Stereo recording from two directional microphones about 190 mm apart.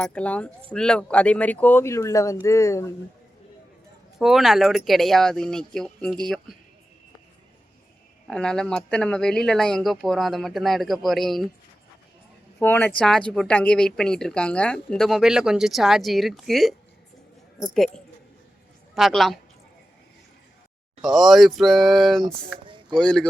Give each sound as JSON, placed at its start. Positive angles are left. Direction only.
{"t": 0.0, "sound": "speech", "side_deg": 5}
{"t": 4.2, "sound": "a woman's voice", "side_deg": 0}
{"t": 8.3, "sound": "a woman's voice", "side_deg": 5}
{"t": 12.5, "sound": "a woman's voice", "side_deg": 10}
{"t": 17.7, "sound": "a woman's voice", "side_deg": 0}
{"t": 21.0, "sound": "a woman's voice", "side_deg": 0}
{"t": 22.5, "sound": "a sound", "side_deg": -25}
{"t": 23.0, "sound": "a woman's voice", "side_deg": 5}